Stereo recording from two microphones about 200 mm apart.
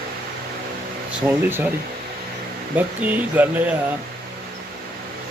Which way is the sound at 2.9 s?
10° right (ahead or behind).